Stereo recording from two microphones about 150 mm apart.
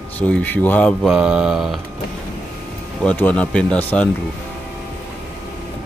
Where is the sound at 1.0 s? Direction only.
5° right (ahead or behind).